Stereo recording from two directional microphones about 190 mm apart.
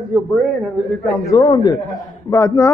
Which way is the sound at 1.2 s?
20° left (ahead or behind).